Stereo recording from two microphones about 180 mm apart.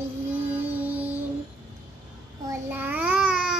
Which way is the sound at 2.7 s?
10° right (ahead or behind).